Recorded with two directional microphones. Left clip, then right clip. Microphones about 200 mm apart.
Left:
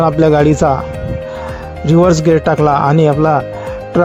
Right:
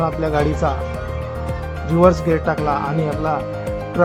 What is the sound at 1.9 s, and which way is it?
Speech, 40° left (ahead or behind).